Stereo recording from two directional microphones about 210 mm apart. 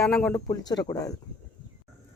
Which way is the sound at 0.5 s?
20° left (ahead or behind).